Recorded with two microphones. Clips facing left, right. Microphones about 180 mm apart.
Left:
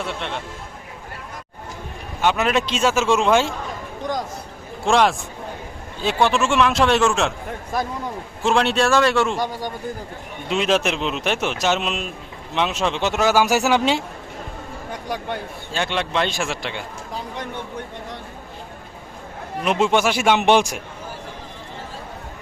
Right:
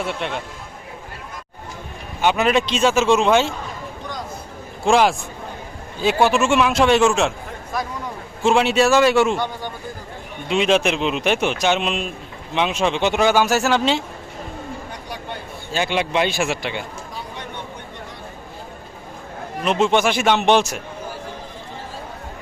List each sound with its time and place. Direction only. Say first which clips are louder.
2.2 s speech: right 2 dB; centre (ahead or behind)
4.9 s speech: right 1 dB; centre (ahead or behind)
8.4 s speech: right 2 dB; 5° right (ahead or behind)
9.4 s speech: left 1 dB; 15° left (ahead or behind)
10.5 s speech: right 2 dB; centre (ahead or behind)
15.7 s speech: right 3 dB; 5° right (ahead or behind)
19.6 s speech: right 1 dB; 10° left (ahead or behind)